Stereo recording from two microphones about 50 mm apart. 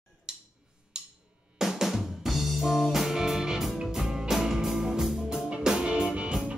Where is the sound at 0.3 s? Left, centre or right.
Centre.